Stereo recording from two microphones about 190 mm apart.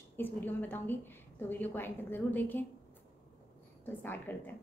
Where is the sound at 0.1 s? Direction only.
10° left (ahead or behind).